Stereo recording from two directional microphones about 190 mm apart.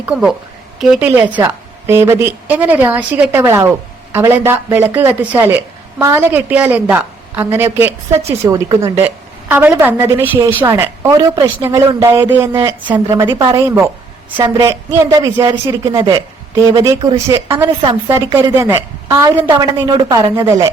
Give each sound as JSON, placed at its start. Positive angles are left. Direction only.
{"t": 0.0, "sound": "speech", "side_deg": -5}